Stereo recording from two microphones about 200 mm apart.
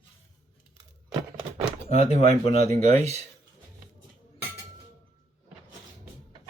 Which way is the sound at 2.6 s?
35° right (ahead or behind).